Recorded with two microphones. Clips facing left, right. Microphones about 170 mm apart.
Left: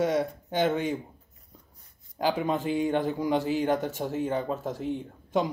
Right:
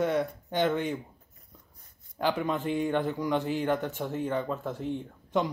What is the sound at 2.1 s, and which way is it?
Speech, 10° left (ahead or behind).